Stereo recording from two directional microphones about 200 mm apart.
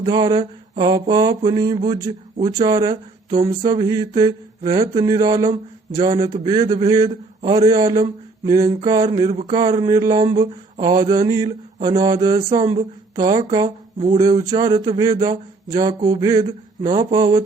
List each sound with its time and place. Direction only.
0.0 s speech: 20° right (ahead or behind)